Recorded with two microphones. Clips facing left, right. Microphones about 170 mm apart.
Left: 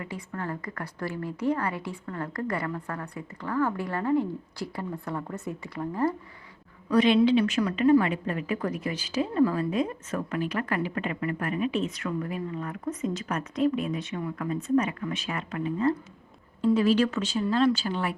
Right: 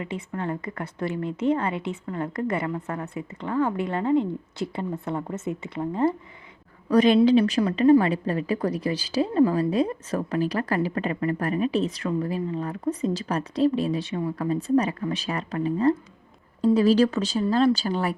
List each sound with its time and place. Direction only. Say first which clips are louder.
0.0 s a woman's voice: right 4 dB; 20° right (ahead or behind)
6.9 s a woman's voice: right 3 dB; 40° right (ahead or behind)